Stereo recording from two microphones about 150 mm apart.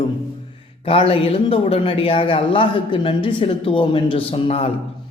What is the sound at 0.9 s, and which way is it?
Speech, 40° left (ahead or behind).